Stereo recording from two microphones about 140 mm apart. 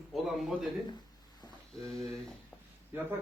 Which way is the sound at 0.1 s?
Centre (ahead or behind).